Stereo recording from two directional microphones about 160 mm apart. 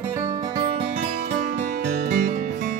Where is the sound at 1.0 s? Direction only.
45° right (ahead or behind).